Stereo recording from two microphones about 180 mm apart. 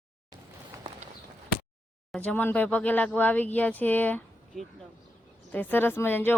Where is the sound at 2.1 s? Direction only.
5° left (ahead or behind).